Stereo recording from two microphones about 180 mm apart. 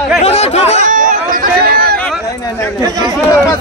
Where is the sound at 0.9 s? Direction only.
45° right (ahead or behind).